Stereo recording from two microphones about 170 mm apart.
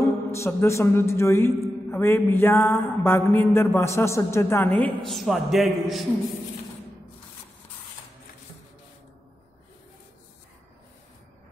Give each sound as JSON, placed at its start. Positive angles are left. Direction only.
{"t": 0.0, "sound": "speech", "side_deg": 15}
{"t": 1.9, "sound": "mantra", "side_deg": 15}